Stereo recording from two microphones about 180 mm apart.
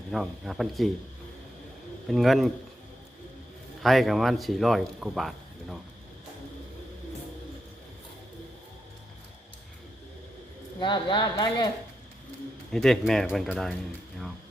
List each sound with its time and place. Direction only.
0.1 s speech: centre (ahead or behind)
2.0 s speech: centre (ahead or behind)
3.8 s speech: centre (ahead or behind)
10.8 s speech: 25° left (ahead or behind)
12.7 s speech: centre (ahead or behind)